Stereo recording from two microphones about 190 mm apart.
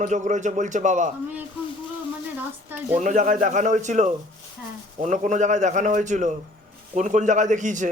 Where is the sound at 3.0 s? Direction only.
40° right (ahead or behind).